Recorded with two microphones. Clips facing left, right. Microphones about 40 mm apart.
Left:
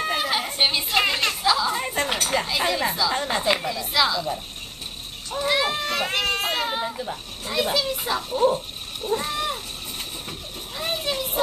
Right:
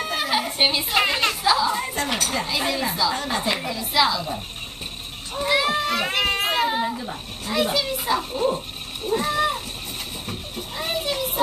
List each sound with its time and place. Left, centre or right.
0.0 s a child's voice: centre
1.8 s speech: left
2.4 s a child's voice: centre
3.1 s a woman's voice: centre
3.6 s a child's voice: centre
5.5 s a child's voice: centre
9.1 s a sound: centre
10.8 s children playing: centre